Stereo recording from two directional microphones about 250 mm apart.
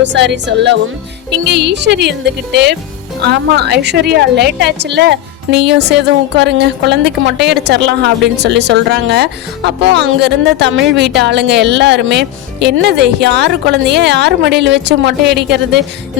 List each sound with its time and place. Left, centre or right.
0.0 s a woman's voice: right